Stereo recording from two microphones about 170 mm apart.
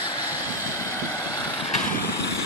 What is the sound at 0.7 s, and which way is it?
Vehicle, 20° left (ahead or behind).